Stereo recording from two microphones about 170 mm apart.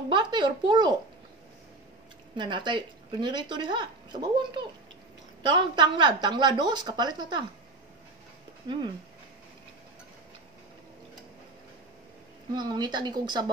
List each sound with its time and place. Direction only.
0.1 s speech: 25° right (ahead or behind)
2.3 s speech: 25° right (ahead or behind)
12.5 s speech: 25° right (ahead or behind)